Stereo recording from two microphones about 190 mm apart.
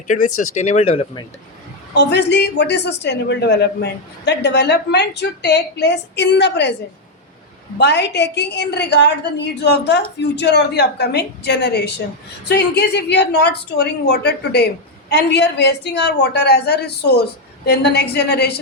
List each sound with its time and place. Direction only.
0.1 s speech: 40° left (ahead or behind)
1.9 s a woman's voice: 65° left (ahead or behind)
7.8 s a woman's voice: 65° left (ahead or behind)